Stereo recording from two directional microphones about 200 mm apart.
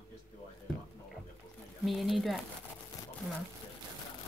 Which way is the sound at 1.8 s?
Centre (ahead or behind).